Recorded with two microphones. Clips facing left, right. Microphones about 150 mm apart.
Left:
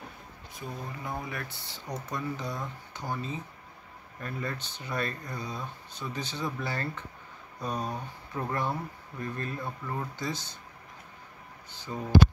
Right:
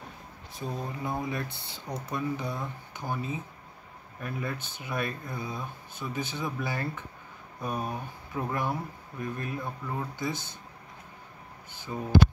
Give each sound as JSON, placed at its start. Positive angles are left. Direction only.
{"t": 0.6, "sound": "speech", "side_deg": -25}
{"t": 10.3, "sound": "speech", "side_deg": -55}
{"t": 11.9, "sound": "speech", "side_deg": -10}